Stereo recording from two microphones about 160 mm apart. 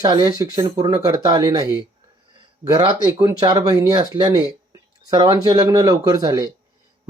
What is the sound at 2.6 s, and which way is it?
Speech, 25° right (ahead or behind).